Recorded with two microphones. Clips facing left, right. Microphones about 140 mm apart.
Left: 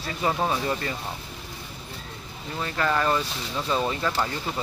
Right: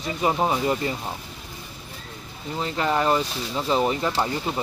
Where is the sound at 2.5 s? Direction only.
20° right (ahead or behind).